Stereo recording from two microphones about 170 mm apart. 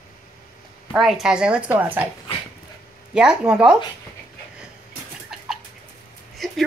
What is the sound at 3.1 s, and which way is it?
Speech, 5° right (ahead or behind).